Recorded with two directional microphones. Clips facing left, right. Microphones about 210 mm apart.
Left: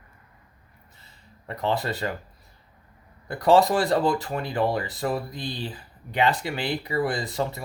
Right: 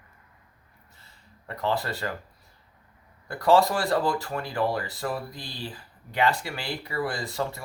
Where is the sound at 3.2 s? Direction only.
20° left (ahead or behind).